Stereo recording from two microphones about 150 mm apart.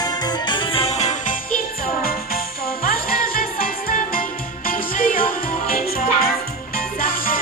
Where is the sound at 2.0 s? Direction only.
80° left.